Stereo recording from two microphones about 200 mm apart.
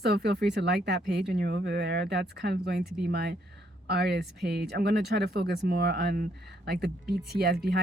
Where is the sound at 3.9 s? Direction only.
55° right (ahead or behind).